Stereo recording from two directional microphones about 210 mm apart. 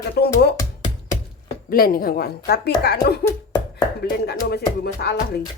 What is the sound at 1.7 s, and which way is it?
Speech, 45° left (ahead or behind).